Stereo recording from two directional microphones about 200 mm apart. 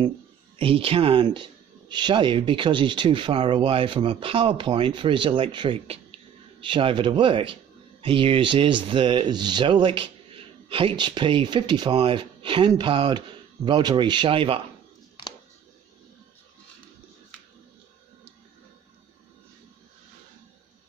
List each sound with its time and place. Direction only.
0.6 s speech: 25° right (ahead or behind)